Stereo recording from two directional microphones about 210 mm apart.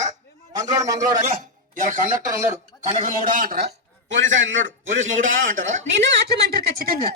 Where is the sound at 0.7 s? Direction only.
15° right (ahead or behind).